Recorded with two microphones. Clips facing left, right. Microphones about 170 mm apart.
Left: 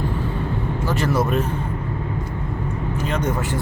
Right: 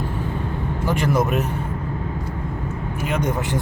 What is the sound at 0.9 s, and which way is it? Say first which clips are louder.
Speech: right 1 dB; 15° right (ahead or behind).